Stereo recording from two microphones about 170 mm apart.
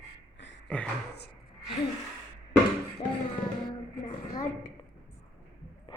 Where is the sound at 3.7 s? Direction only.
25° left (ahead or behind).